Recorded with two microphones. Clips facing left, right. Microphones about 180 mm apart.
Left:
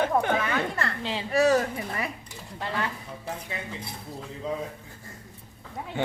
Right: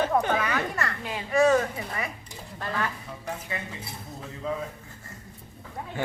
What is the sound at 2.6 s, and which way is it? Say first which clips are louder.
Speech: even; 25° left (ahead or behind).